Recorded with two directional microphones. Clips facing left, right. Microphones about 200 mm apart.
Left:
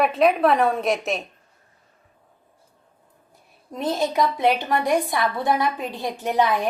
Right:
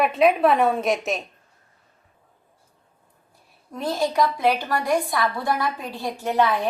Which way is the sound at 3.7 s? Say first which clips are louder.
Left 1 dB; 20° left (ahead or behind).